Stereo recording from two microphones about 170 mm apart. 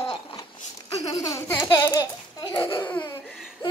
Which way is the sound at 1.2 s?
15° left (ahead or behind).